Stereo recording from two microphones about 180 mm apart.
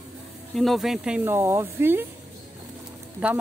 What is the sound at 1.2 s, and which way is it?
Speech, 15° right (ahead or behind).